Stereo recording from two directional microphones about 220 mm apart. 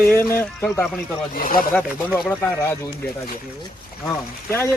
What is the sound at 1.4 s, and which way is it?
Speech, 40° left (ahead or behind).